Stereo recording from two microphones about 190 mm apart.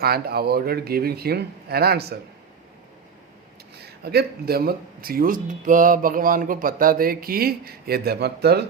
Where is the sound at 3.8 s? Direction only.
55° right (ahead or behind).